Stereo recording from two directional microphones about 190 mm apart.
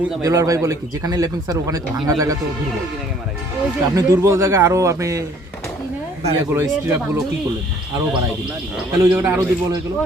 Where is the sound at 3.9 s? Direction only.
15° right (ahead or behind).